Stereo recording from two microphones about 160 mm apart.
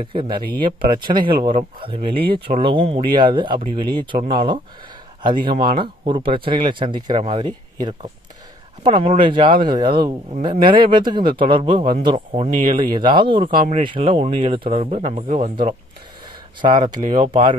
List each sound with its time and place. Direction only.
0.0 s speech: 30° right (ahead or behind)
8.8 s speech: 35° right (ahead or behind)
16.6 s speech: 30° right (ahead or behind)